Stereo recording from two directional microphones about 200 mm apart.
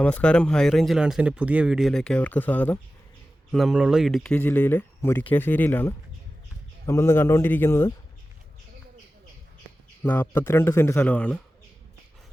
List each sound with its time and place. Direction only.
0.0 s speech: 5° left (ahead or behind)
10.0 s speech: 10° left (ahead or behind)